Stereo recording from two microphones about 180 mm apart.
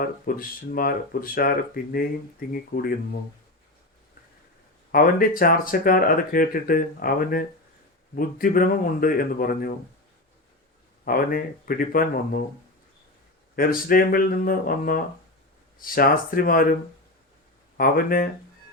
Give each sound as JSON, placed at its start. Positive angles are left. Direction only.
{"t": 0.0, "sound": "speech", "side_deg": 55}
{"t": 4.9, "sound": "speech", "side_deg": 55}
{"t": 11.0, "sound": "speech", "side_deg": 55}
{"t": 13.6, "sound": "speech", "side_deg": 55}
{"t": 17.7, "sound": "speech", "side_deg": 55}